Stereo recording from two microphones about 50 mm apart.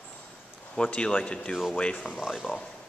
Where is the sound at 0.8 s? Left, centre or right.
Left.